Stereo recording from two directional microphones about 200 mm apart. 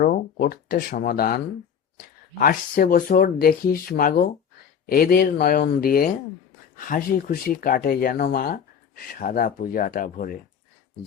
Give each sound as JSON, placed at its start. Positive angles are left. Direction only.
{"t": 0.0, "sound": "speech", "side_deg": 50}
{"t": 2.4, "sound": "speech", "side_deg": 45}